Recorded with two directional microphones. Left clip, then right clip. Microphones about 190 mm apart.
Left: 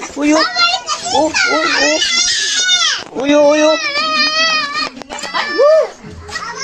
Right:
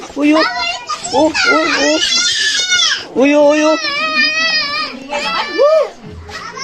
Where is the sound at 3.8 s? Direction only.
30° left (ahead or behind).